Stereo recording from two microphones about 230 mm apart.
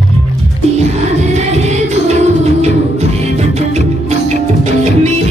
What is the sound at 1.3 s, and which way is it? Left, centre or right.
Music, right.